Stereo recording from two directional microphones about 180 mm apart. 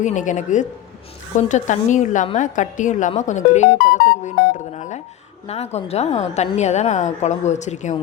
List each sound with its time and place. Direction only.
0.0 s a woman's voice: 45° left (ahead or behind)